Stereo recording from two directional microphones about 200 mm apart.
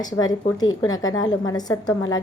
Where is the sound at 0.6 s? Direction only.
90° left.